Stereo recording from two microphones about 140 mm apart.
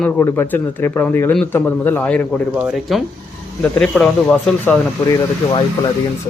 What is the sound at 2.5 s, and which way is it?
Speech, 5° right (ahead or behind).